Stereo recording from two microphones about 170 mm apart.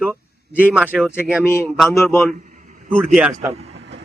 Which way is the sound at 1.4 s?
15° left (ahead or behind).